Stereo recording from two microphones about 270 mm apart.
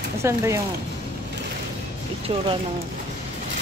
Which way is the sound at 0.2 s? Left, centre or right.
Centre.